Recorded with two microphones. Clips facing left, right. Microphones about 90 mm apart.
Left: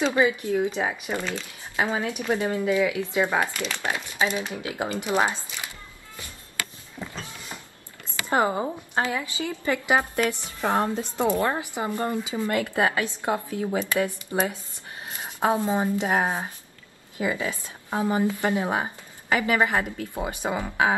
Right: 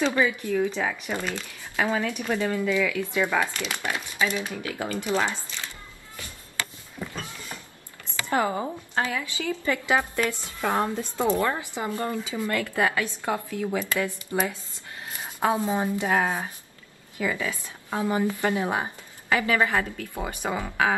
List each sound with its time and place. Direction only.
0.0 s a woman's voice: 20° left (ahead or behind)
8.3 s a woman's voice: 25° left (ahead or behind)